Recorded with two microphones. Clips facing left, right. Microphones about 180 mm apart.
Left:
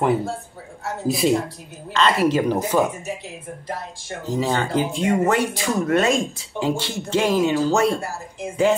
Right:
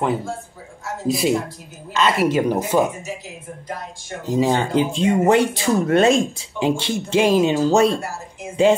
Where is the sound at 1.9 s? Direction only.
10° right (ahead or behind).